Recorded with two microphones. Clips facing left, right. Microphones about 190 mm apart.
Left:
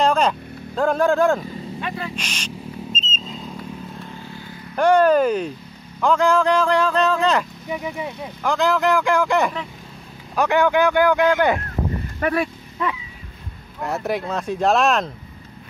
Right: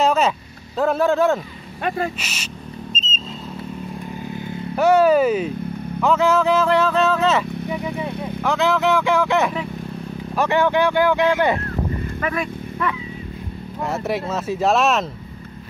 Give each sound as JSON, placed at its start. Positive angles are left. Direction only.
{"t": 0.0, "sound": "vehicle", "side_deg": -5}
{"t": 0.7, "sound": "speech", "side_deg": -5}
{"t": 1.8, "sound": "speech", "side_deg": -50}
{"t": 2.1, "sound": "a sound", "side_deg": -5}
{"t": 4.7, "sound": "speech", "side_deg": -5}
{"t": 7.7, "sound": "speech", "side_deg": 15}
{"t": 8.4, "sound": "speech", "side_deg": 0}
{"t": 13.8, "sound": "speech", "side_deg": 0}